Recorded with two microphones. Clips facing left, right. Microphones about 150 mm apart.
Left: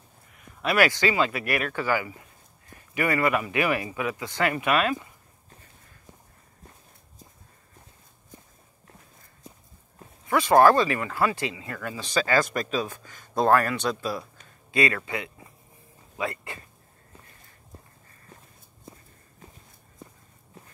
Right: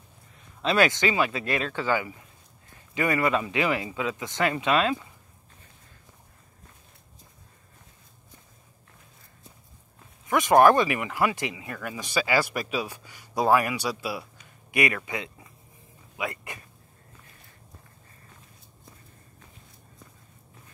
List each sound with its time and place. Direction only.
0.4 s speech: 25° right (ahead or behind)
10.2 s speech: 20° right (ahead or behind)